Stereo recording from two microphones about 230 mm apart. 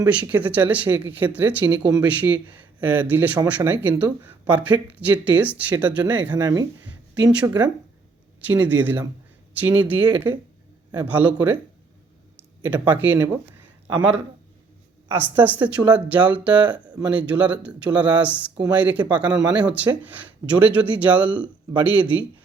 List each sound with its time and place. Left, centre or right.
0.0 s speech: centre
6.3 s speech: centre
7.3 s speech: centre
12.6 s speech: centre
15.0 s speech: centre
19.3 s speech: centre
19.5 s speech: centre